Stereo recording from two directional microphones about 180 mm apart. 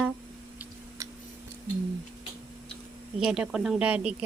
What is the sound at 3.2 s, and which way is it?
Speech, 5° right (ahead or behind).